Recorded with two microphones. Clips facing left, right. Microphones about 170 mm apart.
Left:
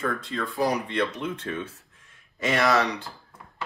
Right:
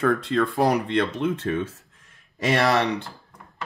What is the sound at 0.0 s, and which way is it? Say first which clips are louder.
Speech: right 8 dB; 65° right (ahead or behind).